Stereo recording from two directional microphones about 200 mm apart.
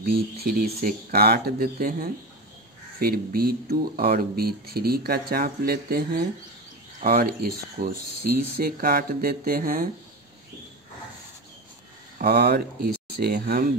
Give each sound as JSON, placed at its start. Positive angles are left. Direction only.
{"t": 0.0, "sound": "speech", "side_deg": -50}
{"t": 12.2, "sound": "speech", "side_deg": -50}